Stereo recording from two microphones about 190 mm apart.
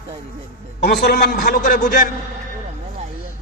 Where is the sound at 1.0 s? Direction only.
55° left (ahead or behind).